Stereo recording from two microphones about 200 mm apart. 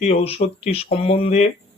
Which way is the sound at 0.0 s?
30° left (ahead or behind).